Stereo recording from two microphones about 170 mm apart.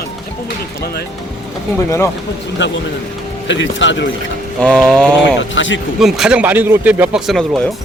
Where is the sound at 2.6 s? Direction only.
90° left.